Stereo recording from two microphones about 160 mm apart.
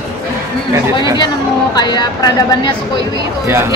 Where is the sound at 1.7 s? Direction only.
25° left (ahead or behind).